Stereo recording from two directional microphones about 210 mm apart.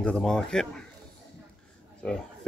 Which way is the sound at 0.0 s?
5° left (ahead or behind).